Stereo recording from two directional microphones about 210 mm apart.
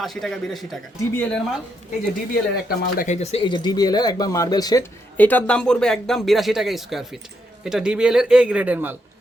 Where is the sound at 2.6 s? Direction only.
40° left (ahead or behind).